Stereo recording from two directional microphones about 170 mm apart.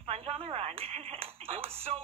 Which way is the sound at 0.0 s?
35° right (ahead or behind).